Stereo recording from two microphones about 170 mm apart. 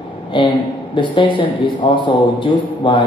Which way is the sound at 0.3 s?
30° left (ahead or behind).